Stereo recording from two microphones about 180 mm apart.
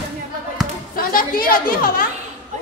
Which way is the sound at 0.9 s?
55° left (ahead or behind).